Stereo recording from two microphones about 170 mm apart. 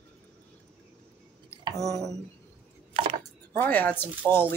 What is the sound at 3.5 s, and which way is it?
Speech, 10° left (ahead or behind).